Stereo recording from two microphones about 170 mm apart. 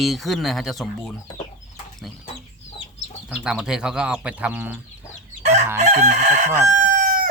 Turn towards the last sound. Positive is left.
turn(degrees=-55)  # may be behind; listen again after turning